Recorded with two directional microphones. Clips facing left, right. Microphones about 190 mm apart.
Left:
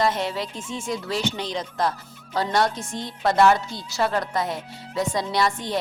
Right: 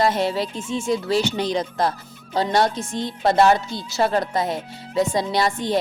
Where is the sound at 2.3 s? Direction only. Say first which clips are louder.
Right 3 dB; 25° right (ahead or behind).